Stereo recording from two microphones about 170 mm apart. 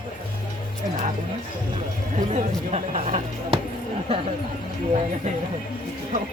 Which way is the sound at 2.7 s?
40° right (ahead or behind).